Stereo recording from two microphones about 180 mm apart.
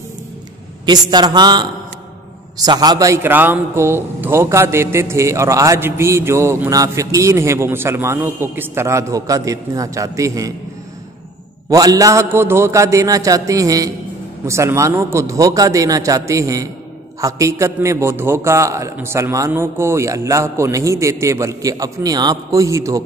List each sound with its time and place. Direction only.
0.8 s a man's voice: 25° right (ahead or behind)
11.7 s a man's voice: 20° right (ahead or behind)